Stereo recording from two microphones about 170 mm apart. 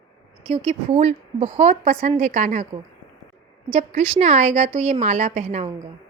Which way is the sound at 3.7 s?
40° right (ahead or behind).